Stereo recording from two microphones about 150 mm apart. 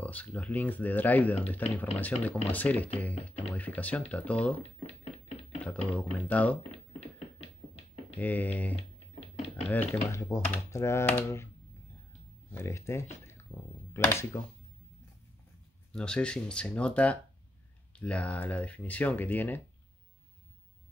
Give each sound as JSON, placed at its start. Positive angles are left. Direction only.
{"t": 0.0, "sound": "speech", "side_deg": 10}
{"t": 5.9, "sound": "speech", "side_deg": 10}
{"t": 8.2, "sound": "speech", "side_deg": 10}
{"t": 12.4, "sound": "speech", "side_deg": 20}
{"t": 15.9, "sound": "speech", "side_deg": 5}